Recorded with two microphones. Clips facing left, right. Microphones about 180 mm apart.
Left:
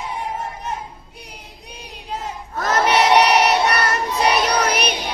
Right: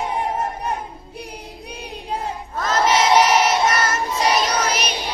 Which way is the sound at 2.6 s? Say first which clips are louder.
Left 1 dB; 65° left (ahead or behind).